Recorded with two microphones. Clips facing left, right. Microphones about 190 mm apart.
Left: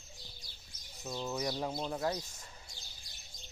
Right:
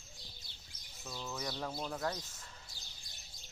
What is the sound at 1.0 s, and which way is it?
Speech, 20° left (ahead or behind).